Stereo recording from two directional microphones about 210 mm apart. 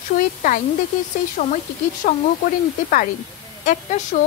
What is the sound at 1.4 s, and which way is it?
Speech, 40° left (ahead or behind).